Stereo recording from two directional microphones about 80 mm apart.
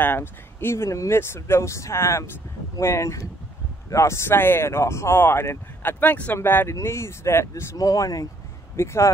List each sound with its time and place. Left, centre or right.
0.0 s speech: left
7.7 s speech: left
8.7 s speech: left